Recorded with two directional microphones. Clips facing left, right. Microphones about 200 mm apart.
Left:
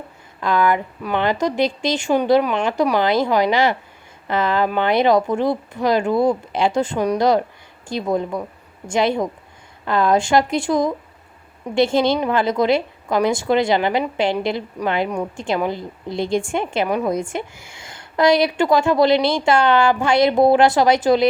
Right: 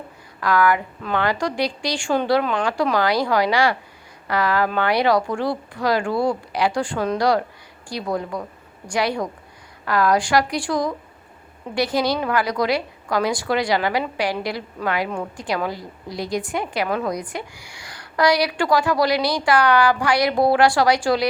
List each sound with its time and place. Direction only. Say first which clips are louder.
0.3 s a woman's voice: left 1 dB; 20° left (ahead or behind)